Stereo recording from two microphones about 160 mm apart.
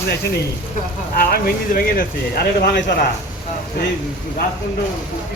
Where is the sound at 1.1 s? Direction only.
65° left (ahead or behind).